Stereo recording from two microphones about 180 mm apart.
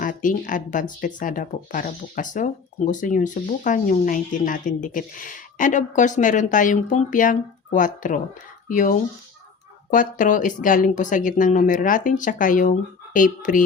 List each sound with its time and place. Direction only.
0.0 s speech: 45° left (ahead or behind)